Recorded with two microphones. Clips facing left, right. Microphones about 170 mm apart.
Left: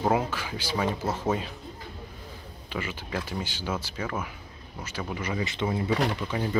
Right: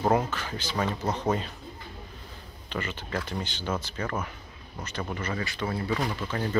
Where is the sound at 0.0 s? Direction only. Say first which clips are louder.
Right 1 dB; 10° left (ahead or behind).